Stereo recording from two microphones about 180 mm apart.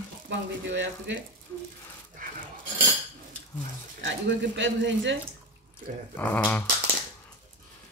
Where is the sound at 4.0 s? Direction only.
85° right.